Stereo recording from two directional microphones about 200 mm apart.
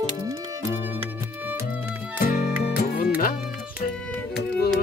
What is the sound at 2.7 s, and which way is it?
Music, 45° left (ahead or behind).